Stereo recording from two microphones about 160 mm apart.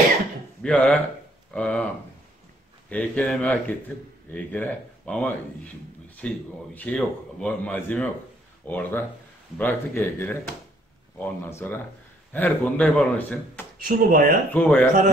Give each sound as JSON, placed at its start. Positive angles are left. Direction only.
{"t": 0.6, "sound": "a man's voice", "side_deg": 5}
{"t": 2.9, "sound": "a man's voice", "side_deg": 10}
{"t": 13.8, "sound": "speech", "side_deg": -65}
{"t": 14.5, "sound": "a man's voice", "side_deg": 10}